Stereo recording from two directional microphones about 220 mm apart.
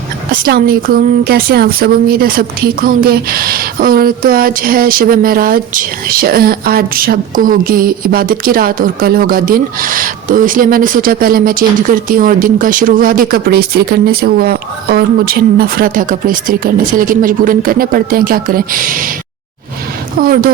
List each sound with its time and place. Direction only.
0.4 s speech: 45° right (ahead or behind)
20.1 s speech: 40° right (ahead or behind)